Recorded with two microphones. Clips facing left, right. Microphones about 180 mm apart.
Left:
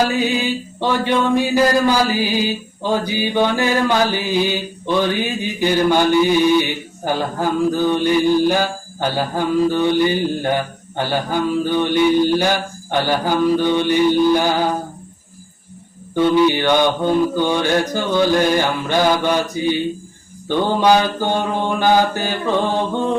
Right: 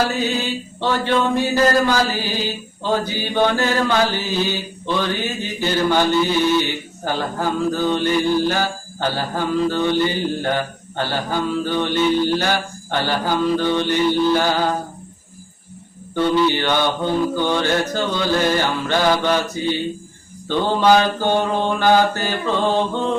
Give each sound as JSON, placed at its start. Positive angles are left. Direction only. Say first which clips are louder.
{"t": 0.1, "sound": "mantra", "louder": "left 3 dB", "side_deg": 15}
{"t": 16.1, "sound": "mantra", "louder": "left 3 dB", "side_deg": 15}